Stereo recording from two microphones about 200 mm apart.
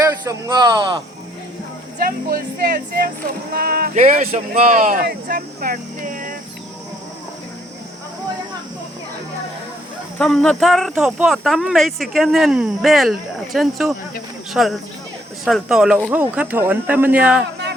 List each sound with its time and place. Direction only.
0.0 s a man's voice: 15° right (ahead or behind)
2.0 s speech: 45° right (ahead or behind)
10.2 s speech: 5° left (ahead or behind)